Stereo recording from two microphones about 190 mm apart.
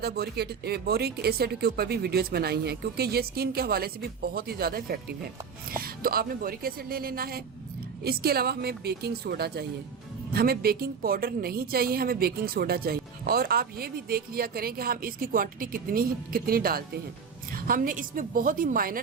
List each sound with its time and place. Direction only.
0.0 s a woman's voice: 55° right (ahead or behind)